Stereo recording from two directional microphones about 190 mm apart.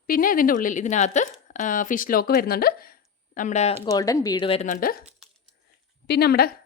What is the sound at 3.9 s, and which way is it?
Speech, 20° left (ahead or behind).